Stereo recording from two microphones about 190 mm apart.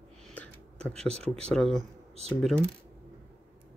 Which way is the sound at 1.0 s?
35° right (ahead or behind).